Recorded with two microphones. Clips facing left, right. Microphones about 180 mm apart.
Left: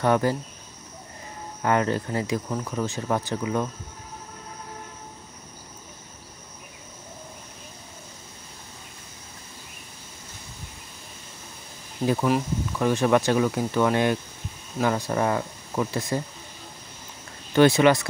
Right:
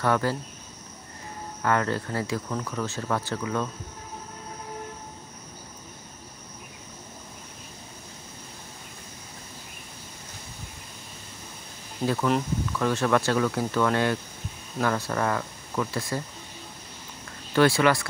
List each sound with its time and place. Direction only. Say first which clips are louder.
0.0 s speech: left 3 dB; 20° left (ahead or behind)
1.6 s speech: left 2 dB; 20° left (ahead or behind)
12.0 s speech: left 3 dB; 5° left (ahead or behind)
12.7 s speech: left 3 dB; 15° left (ahead or behind)
17.6 s speech: left 3 dB; 20° left (ahead or behind)